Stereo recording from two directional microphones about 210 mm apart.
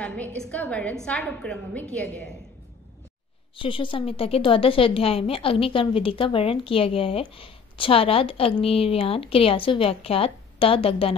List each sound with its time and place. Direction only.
0.0 s a woman's voice: 5° left (ahead or behind)
3.5 s a woman's voice: 25° left (ahead or behind)